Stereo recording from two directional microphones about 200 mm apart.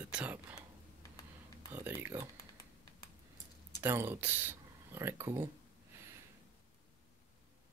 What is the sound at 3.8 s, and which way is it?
Speech, 10° right (ahead or behind).